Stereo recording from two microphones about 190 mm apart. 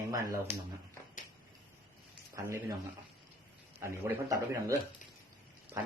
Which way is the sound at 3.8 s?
15° right (ahead or behind).